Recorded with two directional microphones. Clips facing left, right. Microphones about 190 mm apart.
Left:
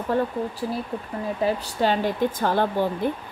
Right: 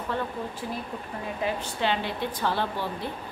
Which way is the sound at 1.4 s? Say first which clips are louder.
Left 5 dB; 40° left (ahead or behind).